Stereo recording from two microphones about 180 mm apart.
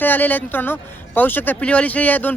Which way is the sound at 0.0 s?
10° left (ahead or behind).